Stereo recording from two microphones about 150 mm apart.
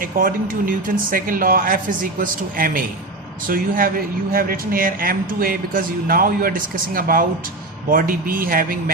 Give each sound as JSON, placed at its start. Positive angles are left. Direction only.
{"t": 0.0, "sound": "speech", "side_deg": -65}